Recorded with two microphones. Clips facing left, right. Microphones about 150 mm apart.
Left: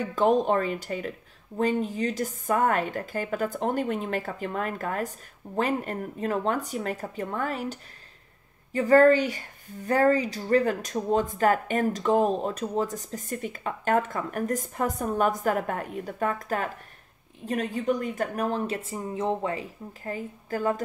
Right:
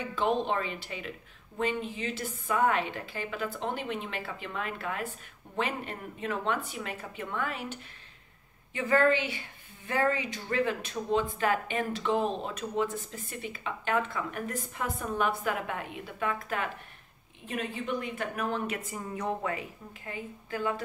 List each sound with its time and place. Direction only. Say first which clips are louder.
0.0 s a woman's voice: left 6 dB; 45° left (ahead or behind)
18.9 s speech: left 5 dB; 25° left (ahead or behind); by 20.8 s 40° left (ahead or behind)